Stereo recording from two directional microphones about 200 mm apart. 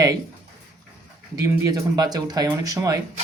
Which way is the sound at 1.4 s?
15° right (ahead or behind).